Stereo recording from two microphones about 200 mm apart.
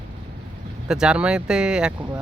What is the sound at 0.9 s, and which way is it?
Speech, 5° right (ahead or behind).